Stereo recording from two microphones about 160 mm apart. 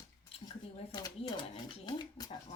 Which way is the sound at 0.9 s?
25° left (ahead or behind).